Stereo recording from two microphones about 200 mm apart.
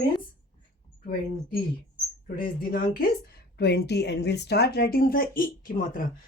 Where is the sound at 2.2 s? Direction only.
45° left (ahead or behind).